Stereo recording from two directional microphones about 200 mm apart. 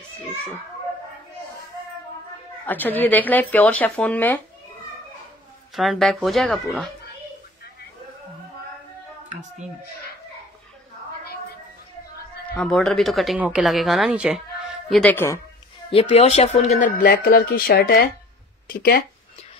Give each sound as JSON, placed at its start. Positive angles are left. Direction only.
{"t": 2.6, "sound": "speech", "side_deg": 10}
{"t": 5.8, "sound": "speech", "side_deg": 0}
{"t": 12.5, "sound": "speech", "side_deg": 5}
{"t": 15.9, "sound": "speech", "side_deg": 30}